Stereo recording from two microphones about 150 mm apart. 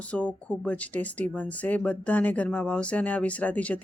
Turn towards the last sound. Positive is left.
turn(degrees=10)  # may be behind; listen again after turning